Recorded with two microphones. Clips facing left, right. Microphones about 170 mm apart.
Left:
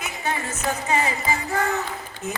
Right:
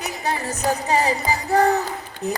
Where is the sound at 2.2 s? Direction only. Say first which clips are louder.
Right 5 dB; 35° right (ahead or behind).